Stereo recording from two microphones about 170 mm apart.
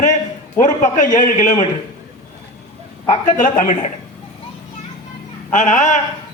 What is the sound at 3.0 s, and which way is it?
Speech, 50° left (ahead or behind).